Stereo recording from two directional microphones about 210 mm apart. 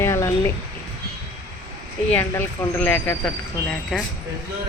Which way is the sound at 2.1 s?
10° left (ahead or behind).